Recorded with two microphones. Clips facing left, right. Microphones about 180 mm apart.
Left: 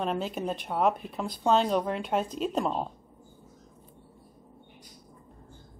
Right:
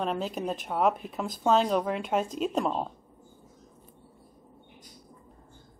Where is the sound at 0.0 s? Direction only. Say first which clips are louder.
Even; centre (ahead or behind).